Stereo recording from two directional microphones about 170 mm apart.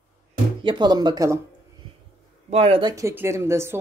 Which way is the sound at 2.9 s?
15° right (ahead or behind).